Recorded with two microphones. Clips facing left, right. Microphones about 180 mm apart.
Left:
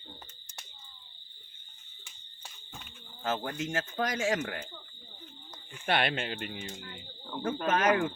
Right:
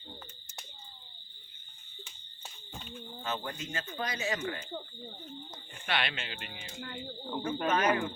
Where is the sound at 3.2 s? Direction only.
50° left (ahead or behind).